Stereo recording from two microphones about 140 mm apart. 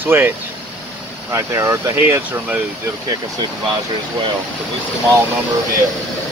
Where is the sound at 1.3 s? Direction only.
20° right (ahead or behind).